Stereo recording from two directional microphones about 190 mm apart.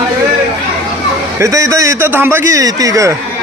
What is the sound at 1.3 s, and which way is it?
A man's voice, 15° right (ahead or behind).